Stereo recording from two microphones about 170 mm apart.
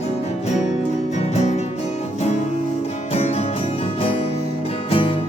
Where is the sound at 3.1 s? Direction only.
40° left (ahead or behind).